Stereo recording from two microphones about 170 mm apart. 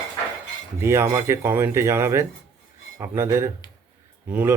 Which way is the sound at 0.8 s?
15° right (ahead or behind).